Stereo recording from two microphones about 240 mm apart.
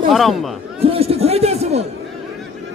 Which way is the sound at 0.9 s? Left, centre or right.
Right.